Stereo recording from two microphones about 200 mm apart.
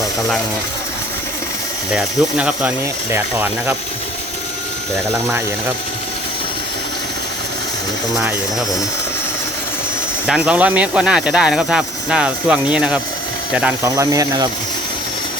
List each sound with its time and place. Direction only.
1.9 s speech: 5° right (ahead or behind)
10.2 s speech: 5° right (ahead or behind)
13.8 s speech: 15° right (ahead or behind)